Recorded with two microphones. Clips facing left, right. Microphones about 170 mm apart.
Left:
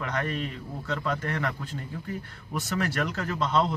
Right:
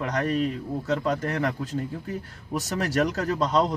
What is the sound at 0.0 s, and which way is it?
Speech, 40° right (ahead or behind).